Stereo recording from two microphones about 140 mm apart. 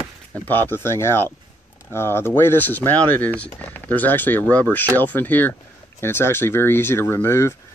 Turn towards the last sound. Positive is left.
turn(degrees=20)  # may be behind; listen again after turning